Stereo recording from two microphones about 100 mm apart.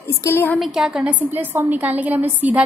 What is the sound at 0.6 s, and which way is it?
A woman's voice, 5° right (ahead or behind).